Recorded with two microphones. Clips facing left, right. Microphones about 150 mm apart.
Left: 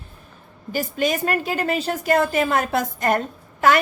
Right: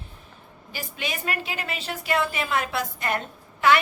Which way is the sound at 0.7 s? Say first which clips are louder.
Left 11 dB; 45° left (ahead or behind).